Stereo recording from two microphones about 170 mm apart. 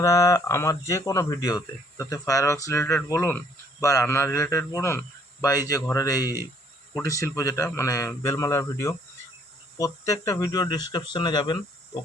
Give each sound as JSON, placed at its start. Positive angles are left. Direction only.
{"t": 0.0, "sound": "speech", "side_deg": 20}